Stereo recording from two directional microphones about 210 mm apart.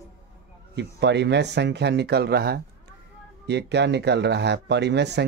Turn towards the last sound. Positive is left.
turn(degrees=-55)  # may be behind; listen again after turning